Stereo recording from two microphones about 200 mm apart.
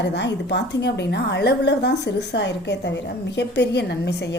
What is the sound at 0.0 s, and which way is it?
A woman's voice, 60° left (ahead or behind).